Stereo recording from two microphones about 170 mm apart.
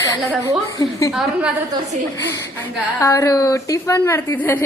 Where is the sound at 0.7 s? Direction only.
20° left (ahead or behind).